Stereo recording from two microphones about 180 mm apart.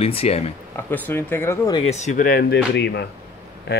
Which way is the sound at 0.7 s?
10° left (ahead or behind).